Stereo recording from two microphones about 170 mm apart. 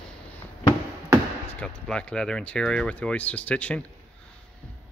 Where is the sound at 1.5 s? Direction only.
5° left (ahead or behind).